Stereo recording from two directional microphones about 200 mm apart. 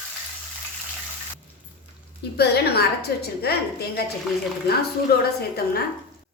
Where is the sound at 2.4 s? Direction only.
55° left (ahead or behind).